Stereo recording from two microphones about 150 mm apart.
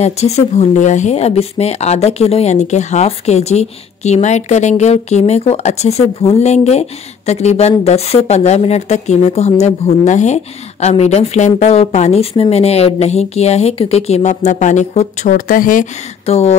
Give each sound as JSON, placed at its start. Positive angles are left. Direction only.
{"t": 0.0, "sound": "speech", "side_deg": 45}
{"t": 16.3, "sound": "speech", "side_deg": 45}